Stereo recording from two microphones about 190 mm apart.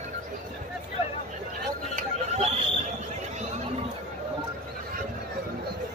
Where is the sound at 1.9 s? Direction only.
35° right (ahead or behind).